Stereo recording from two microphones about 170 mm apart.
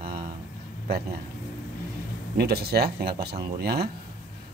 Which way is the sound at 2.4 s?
65° right (ahead or behind).